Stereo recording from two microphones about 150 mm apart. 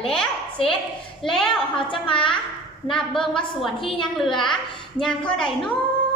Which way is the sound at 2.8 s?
5° left (ahead or behind).